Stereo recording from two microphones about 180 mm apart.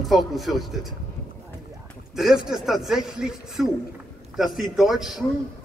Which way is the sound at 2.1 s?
Centre (ahead or behind).